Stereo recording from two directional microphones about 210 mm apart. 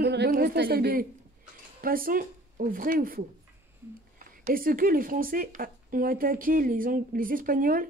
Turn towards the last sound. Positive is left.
turn(degrees=-40)  # may be behind; listen again after turning